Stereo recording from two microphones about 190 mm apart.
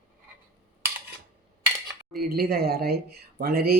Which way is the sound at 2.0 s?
Centre (ahead or behind).